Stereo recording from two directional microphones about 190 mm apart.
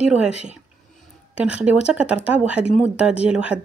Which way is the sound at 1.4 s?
5° right (ahead or behind).